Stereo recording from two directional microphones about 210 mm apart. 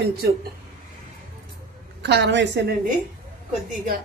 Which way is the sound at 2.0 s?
55° right (ahead or behind).